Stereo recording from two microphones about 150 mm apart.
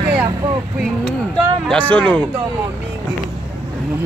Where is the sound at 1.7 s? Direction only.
10° left (ahead or behind).